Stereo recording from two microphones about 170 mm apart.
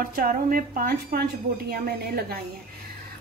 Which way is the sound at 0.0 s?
60° right (ahead or behind).